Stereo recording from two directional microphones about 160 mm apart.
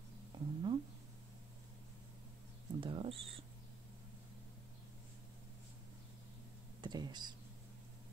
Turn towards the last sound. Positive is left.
turn(degrees=-25)  # may be behind; listen again after turning